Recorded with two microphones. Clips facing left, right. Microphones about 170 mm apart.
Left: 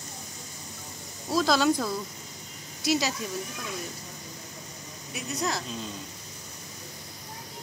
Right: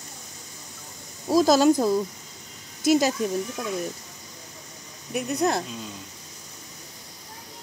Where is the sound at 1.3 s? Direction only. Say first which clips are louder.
Right 6 dB; 45° right (ahead or behind).